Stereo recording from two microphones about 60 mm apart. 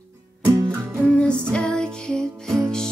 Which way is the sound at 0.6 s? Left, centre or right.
Centre.